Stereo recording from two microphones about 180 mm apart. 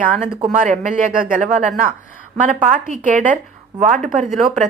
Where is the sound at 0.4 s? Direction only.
45° right (ahead or behind).